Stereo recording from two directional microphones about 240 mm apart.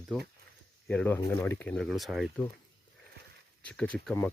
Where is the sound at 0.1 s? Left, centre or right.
Centre.